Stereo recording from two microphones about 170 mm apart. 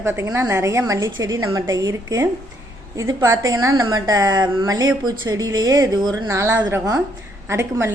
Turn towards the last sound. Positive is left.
turn(degrees=-15)  # may be behind; listen again after turning